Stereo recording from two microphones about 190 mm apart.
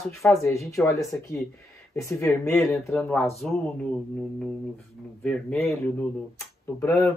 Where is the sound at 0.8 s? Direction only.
Centre (ahead or behind).